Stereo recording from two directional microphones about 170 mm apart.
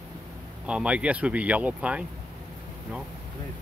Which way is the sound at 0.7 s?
5° right (ahead or behind).